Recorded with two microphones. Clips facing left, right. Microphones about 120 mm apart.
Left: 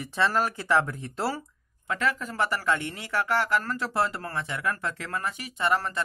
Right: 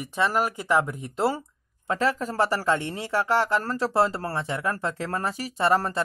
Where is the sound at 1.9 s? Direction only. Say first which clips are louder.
Right 4 dB; 30° right (ahead or behind).